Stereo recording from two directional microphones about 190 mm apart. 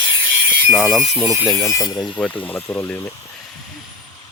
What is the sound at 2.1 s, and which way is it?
Speech, 5° left (ahead or behind).